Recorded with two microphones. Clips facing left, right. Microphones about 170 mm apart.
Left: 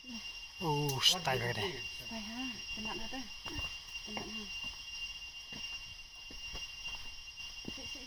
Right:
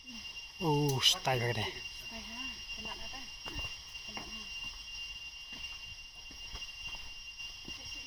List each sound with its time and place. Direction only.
0.6 s speech: 15° right (ahead or behind)
0.9 s speech: centre (ahead or behind)